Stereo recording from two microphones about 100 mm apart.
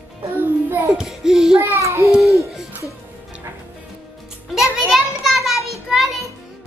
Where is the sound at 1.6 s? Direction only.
30° right (ahead or behind).